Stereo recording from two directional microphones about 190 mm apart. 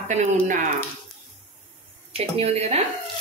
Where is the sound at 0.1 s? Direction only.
40° right (ahead or behind).